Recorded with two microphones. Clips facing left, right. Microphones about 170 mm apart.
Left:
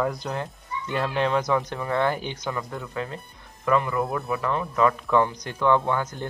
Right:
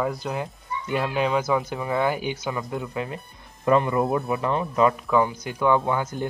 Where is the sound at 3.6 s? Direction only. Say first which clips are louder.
Right 3 dB; 25° right (ahead or behind).